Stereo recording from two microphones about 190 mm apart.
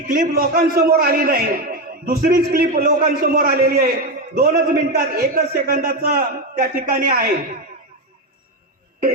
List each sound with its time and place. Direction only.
0.1 s a man's voice: 50° right (ahead or behind)